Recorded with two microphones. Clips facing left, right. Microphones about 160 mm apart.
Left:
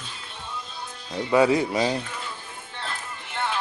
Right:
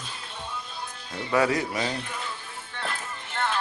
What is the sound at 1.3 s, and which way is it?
Speech, 20° left (ahead or behind).